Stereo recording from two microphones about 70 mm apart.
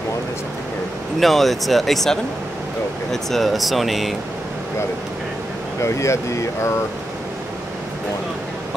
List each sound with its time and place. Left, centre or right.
1.2 s speech: centre
5.8 s speech: left